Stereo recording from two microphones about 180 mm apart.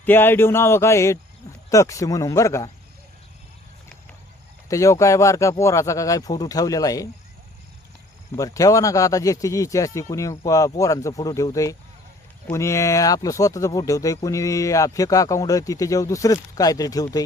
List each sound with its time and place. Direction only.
0.0 s speech: 10° left (ahead or behind)
4.7 s speech: 15° left (ahead or behind)
8.4 s speech: 20° left (ahead or behind)